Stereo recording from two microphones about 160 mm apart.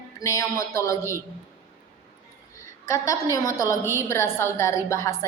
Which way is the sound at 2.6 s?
20° left (ahead or behind).